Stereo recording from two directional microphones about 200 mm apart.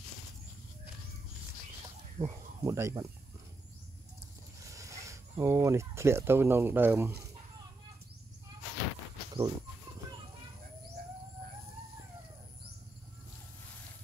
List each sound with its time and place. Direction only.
2.1 s speech: 15° right (ahead or behind)
4.6 s speech: 15° right (ahead or behind)
9.3 s speech: 20° right (ahead or behind)